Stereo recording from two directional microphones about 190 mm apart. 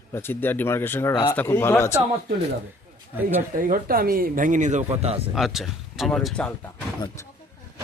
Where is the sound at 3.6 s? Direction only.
50° right (ahead or behind).